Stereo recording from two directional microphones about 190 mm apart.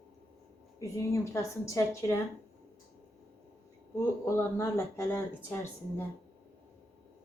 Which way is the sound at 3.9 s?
15° left (ahead or behind).